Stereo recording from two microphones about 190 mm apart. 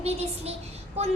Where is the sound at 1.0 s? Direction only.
35° right (ahead or behind).